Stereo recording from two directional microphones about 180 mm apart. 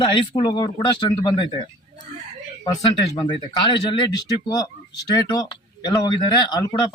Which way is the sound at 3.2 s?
25° left (ahead or behind).